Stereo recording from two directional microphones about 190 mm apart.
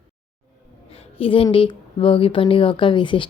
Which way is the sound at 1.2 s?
30° left (ahead or behind).